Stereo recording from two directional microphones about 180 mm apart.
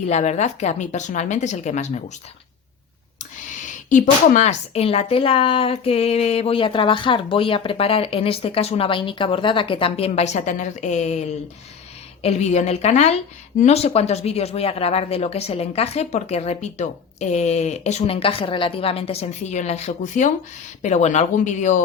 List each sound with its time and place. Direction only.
0.1 s speech: 40° left (ahead or behind)
3.2 s speech: 45° left (ahead or behind)